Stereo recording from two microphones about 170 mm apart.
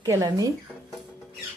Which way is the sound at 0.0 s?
20° right (ahead or behind).